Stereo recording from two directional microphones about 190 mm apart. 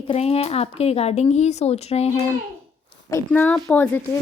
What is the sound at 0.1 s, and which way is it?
Speech, 30° left (ahead or behind).